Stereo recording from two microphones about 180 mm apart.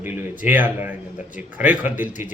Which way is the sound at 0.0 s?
10° right (ahead or behind).